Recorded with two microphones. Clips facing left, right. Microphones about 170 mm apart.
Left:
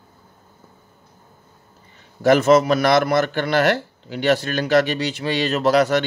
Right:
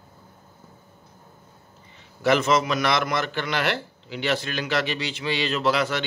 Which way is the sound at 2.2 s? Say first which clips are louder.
Left 7 dB; 45° left (ahead or behind).